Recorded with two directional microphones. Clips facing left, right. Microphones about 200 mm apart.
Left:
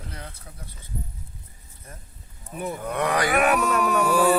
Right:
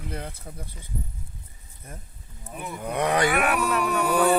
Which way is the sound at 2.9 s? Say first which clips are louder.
Right 2 dB; 20° right (ahead or behind).